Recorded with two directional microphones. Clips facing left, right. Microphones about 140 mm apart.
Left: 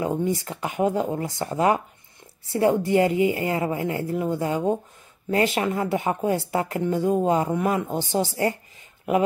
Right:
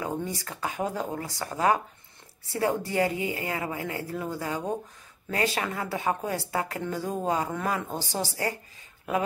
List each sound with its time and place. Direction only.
0.0 s speech: 25° left (ahead or behind)